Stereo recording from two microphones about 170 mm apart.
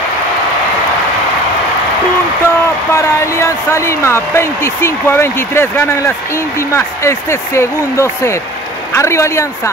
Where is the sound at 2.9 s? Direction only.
15° left (ahead or behind).